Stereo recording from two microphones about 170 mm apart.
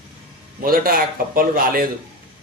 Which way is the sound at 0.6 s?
60° right (ahead or behind).